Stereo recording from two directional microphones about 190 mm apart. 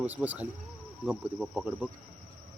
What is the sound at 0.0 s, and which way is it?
Speech, 10° right (ahead or behind).